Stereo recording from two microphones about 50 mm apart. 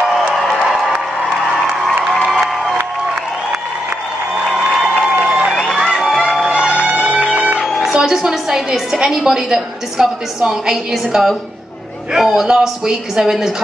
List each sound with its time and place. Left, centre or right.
2.3 s crowd: centre
4.5 s a sound: centre
5.2 s crowd: centre
6.7 s music: right
7.6 s a sound: centre
8.7 s a woman's voice: centre